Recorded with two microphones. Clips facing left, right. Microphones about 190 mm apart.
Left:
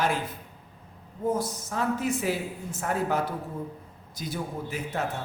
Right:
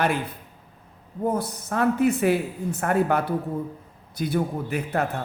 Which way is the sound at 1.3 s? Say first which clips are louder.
Right 1 dB; 60° right (ahead or behind).